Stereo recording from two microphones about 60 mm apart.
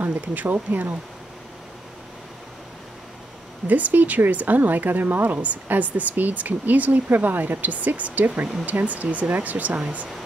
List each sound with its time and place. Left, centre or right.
0.0 s a woman's voice: right
3.6 s a woman's voice: right